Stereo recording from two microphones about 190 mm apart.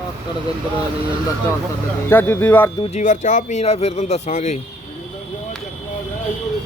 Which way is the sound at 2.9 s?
40° left (ahead or behind).